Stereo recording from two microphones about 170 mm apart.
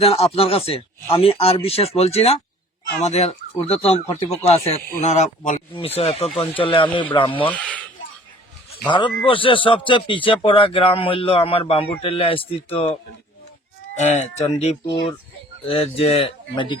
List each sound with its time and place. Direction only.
0.0 s a man's voice: 35° left (ahead or behind)
7.5 s speech: 10° left (ahead or behind)
8.9 s a man's voice: 30° left (ahead or behind)
13.9 s a man's voice: 45° left (ahead or behind)